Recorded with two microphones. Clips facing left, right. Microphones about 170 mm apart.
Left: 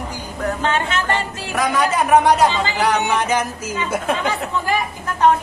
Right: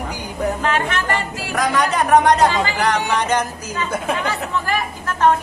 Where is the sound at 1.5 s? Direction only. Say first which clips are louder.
Even; 5° left (ahead or behind).